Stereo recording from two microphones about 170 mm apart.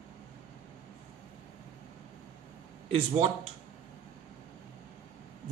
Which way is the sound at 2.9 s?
35° right (ahead or behind).